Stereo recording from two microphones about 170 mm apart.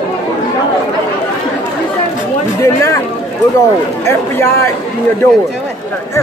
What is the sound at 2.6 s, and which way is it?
Speech, 15° left (ahead or behind).